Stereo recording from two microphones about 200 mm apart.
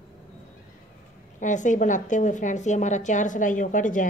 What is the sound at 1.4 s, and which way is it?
A woman's voice, 40° left (ahead or behind).